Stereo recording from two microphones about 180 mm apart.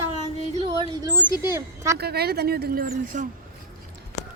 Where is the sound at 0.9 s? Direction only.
20° right (ahead or behind).